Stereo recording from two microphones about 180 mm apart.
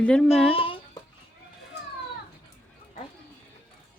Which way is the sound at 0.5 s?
30° left (ahead or behind).